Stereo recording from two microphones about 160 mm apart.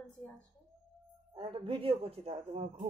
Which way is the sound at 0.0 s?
10° left (ahead or behind).